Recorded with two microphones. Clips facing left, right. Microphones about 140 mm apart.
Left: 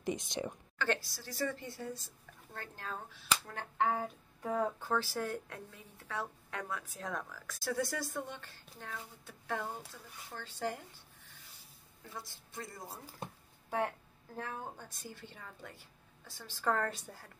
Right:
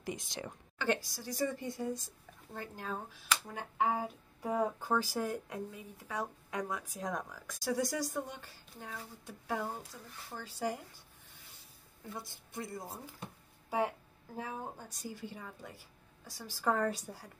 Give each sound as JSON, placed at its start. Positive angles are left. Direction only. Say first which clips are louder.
{"t": 0.0, "sound": "speech", "louder": "left 4 dB", "side_deg": 20}
{"t": 0.7, "sound": "a woman's voice", "louder": "right 2 dB", "side_deg": -15}
{"t": 12.1, "sound": "a woman's voice", "louder": "right 3 dB", "side_deg": -20}
{"t": 13.7, "sound": "speech", "louder": "right 2 dB", "side_deg": -10}